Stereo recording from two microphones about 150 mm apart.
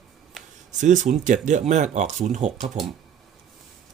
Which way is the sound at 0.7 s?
55° right (ahead or behind).